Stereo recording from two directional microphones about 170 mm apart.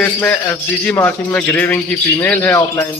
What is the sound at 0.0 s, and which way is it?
A man's voice, 10° left (ahead or behind).